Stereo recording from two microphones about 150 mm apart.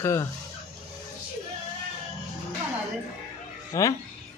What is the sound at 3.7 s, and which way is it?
Speech, 20° left (ahead or behind).